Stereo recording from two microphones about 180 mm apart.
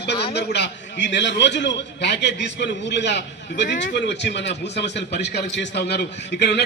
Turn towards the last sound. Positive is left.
turn(degrees=70)  # may be behind; listen again after turning